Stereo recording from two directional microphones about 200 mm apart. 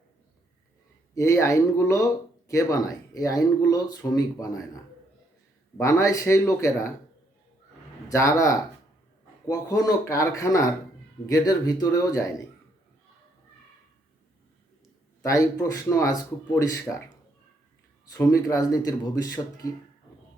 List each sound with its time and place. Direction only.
1.1 s speech: 15° left (ahead or behind)
8.0 s speech: 15° left (ahead or behind)
15.2 s speech: 15° left (ahead or behind)
18.0 s speech: 15° left (ahead or behind)